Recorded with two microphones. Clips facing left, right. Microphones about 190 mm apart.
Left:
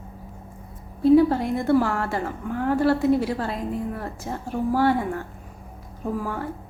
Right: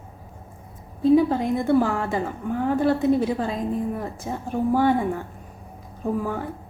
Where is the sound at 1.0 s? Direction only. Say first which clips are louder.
Left 1 dB; 15° right (ahead or behind).